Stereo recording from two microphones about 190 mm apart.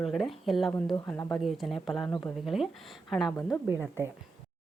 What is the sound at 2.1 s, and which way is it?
Speech, 15° left (ahead or behind).